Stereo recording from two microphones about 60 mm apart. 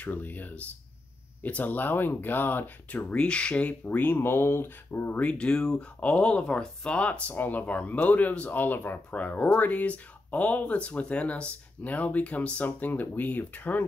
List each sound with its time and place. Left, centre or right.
0.0 s speech: left
3.8 s speech: left
5.2 s speech: centre